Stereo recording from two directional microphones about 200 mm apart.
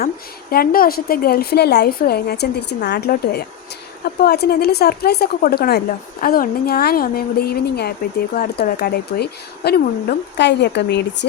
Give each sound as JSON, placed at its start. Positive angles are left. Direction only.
{"t": 0.5, "sound": "speech", "side_deg": 45}